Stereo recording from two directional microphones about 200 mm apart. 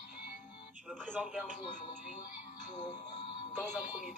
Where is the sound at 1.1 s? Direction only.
10° right (ahead or behind).